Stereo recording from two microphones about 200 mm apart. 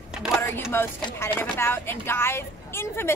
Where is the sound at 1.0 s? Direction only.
20° left (ahead or behind).